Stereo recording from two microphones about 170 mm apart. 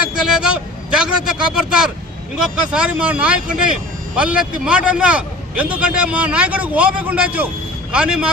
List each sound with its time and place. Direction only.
0.3 s speech: 5° right (ahead or behind)